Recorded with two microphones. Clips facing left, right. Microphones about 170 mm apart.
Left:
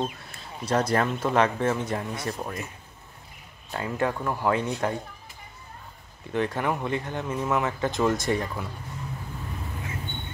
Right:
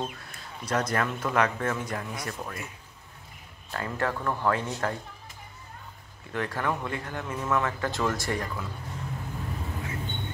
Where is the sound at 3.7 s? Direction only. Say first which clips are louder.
Left 3 dB; 15° left (ahead or behind).